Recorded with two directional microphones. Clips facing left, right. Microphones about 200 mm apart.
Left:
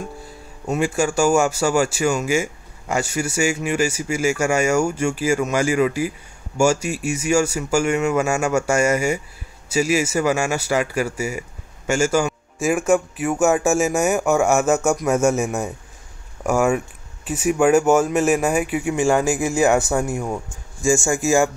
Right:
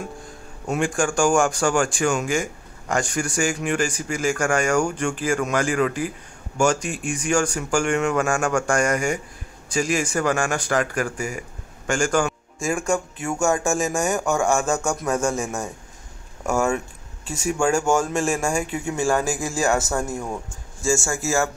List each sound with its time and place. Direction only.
0.7 s a man's voice: 5° left (ahead or behind)
17.8 s speech: 5° left (ahead or behind)